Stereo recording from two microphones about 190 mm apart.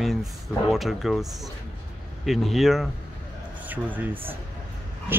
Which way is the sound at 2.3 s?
Centre (ahead or behind).